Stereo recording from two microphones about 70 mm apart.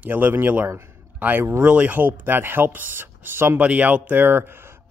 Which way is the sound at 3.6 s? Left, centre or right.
Centre.